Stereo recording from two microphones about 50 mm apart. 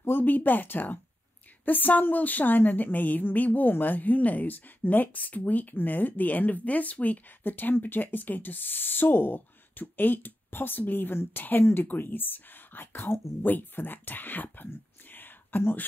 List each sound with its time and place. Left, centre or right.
0.0 s a woman's voice: left
13.4 s a woman's voice: left
15.0 s whispering: left